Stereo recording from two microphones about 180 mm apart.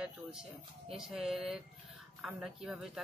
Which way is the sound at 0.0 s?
5° right (ahead or behind).